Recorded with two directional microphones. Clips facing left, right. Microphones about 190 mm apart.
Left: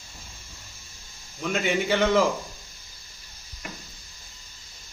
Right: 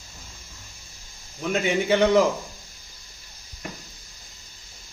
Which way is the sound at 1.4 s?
15° right (ahead or behind).